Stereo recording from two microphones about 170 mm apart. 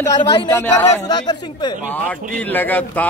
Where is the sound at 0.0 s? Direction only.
25° left (ahead or behind).